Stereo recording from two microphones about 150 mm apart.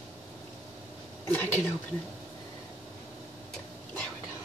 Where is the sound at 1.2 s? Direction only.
15° left (ahead or behind).